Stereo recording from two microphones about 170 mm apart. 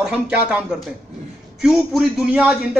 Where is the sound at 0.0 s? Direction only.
5° right (ahead or behind).